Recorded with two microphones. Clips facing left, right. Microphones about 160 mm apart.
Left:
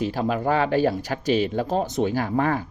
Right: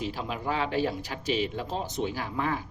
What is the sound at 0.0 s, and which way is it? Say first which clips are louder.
Speech: left 9 dB; 50° left (ahead or behind).